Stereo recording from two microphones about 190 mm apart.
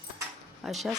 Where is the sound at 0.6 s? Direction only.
Centre (ahead or behind).